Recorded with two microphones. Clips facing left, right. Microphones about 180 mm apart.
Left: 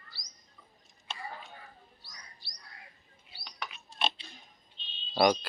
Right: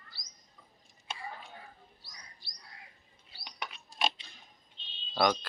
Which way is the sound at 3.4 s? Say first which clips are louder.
Even; 20° right (ahead or behind).